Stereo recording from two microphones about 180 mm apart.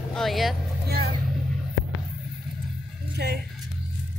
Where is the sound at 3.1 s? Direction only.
65° right (ahead or behind).